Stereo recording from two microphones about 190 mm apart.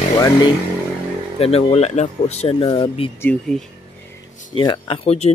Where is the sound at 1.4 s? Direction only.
35° left (ahead or behind).